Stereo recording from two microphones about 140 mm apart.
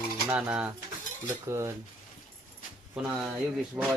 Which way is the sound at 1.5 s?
20° right (ahead or behind).